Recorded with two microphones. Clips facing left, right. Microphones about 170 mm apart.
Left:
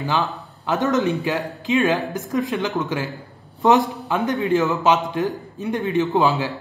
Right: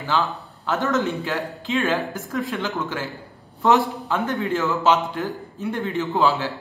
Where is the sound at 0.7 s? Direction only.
20° left (ahead or behind).